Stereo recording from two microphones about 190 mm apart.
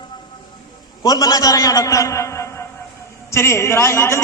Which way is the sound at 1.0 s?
20° left (ahead or behind).